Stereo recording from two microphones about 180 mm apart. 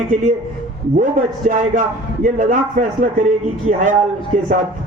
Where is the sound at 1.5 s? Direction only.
45° right (ahead or behind).